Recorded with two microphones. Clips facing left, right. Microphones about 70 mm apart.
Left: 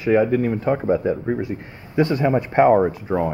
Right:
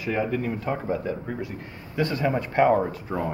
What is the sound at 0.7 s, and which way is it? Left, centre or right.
Speech, left.